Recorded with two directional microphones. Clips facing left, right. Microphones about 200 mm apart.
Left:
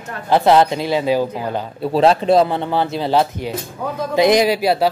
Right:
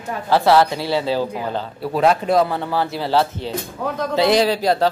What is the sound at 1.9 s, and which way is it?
A woman's voice, 30° left (ahead or behind).